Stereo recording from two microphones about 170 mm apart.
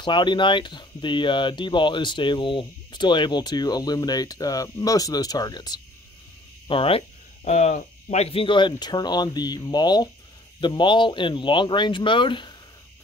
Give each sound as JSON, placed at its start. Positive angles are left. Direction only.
{"t": 0.0, "sound": "speech", "side_deg": 25}
{"t": 7.4, "sound": "speech", "side_deg": 45}